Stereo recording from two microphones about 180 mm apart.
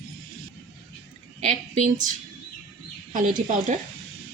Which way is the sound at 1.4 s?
45° right (ahead or behind).